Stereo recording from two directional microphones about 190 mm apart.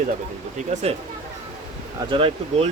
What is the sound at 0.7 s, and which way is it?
Speech, 35° right (ahead or behind).